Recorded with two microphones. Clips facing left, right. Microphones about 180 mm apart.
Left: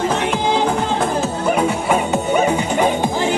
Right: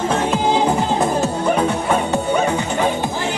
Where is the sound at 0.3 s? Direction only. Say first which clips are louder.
Right 1 dB; 5° right (ahead or behind).